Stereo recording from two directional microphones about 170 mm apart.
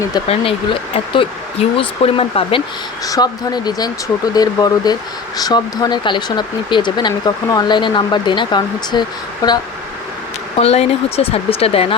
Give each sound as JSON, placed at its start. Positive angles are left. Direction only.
{"t": 0.3, "sound": "speech", "side_deg": 35}
{"t": 3.1, "sound": "speech", "side_deg": 25}
{"t": 10.6, "sound": "speech", "side_deg": 35}